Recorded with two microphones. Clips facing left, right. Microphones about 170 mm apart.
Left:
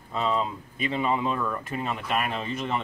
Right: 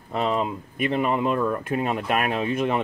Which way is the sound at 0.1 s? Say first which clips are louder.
Right 3 dB; 60° right (ahead or behind).